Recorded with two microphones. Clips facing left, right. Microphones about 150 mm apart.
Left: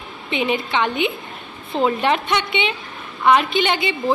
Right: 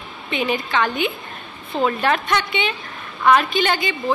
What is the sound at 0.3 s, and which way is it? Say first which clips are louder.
A woman's voice: left 1 dB; 25° left (ahead or behind).